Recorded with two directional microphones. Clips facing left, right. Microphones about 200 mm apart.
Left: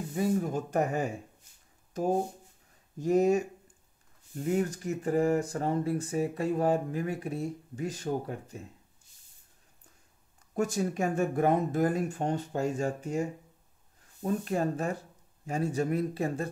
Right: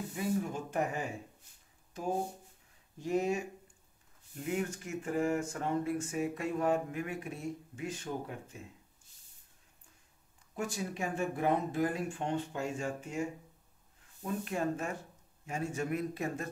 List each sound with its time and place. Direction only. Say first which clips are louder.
0.1 s speech: left 6 dB; 40° left (ahead or behind)
10.5 s speech: left 8 dB; 45° left (ahead or behind)